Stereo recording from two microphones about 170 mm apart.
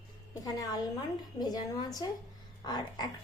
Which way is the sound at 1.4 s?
25° left (ahead or behind).